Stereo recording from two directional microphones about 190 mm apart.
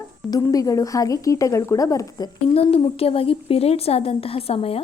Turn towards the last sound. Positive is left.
turn(degrees=30)  # may be behind; listen again after turning